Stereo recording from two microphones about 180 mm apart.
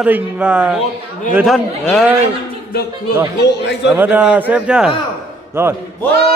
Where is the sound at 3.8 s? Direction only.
10° right (ahead or behind).